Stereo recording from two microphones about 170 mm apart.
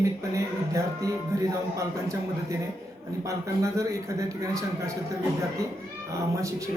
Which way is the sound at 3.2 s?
20° right (ahead or behind).